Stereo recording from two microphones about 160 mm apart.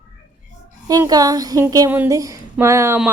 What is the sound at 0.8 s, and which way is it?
Speech, 25° right (ahead or behind).